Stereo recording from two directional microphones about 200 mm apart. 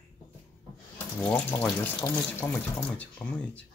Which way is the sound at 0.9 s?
10° left (ahead or behind).